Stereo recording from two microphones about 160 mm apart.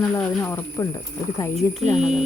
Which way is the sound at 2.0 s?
5° right (ahead or behind).